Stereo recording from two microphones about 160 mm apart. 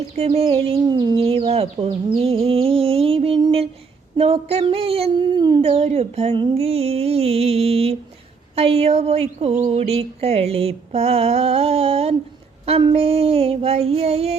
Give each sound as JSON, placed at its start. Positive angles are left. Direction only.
{"t": 0.2, "sound": "a woman's voice", "side_deg": -35}
{"t": 1.2, "sound": "a woman's voice", "side_deg": -40}